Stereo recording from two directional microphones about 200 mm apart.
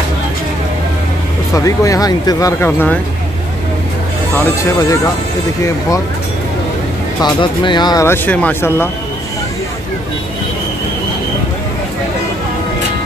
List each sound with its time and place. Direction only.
1.5 s speech: 15° left (ahead or behind)
7.2 s speech: 20° left (ahead or behind)